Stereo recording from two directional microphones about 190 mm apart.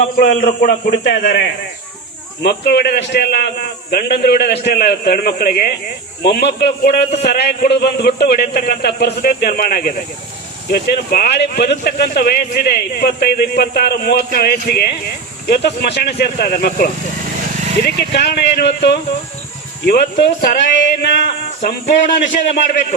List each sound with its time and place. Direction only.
0.0 s a man's voice: 40° left (ahead or behind)
17.8 s speech: 60° left (ahead or behind)
21.6 s a man's voice: 40° left (ahead or behind)